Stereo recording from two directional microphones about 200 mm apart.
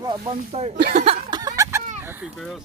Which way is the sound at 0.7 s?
50° right (ahead or behind).